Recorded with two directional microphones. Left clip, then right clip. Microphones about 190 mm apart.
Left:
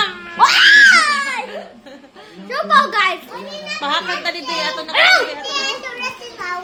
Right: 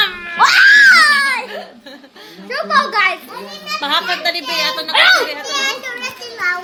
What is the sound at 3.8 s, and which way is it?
A woman's voice, centre (ahead or behind).